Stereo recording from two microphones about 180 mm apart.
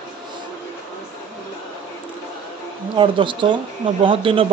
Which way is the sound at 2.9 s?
25° right (ahead or behind).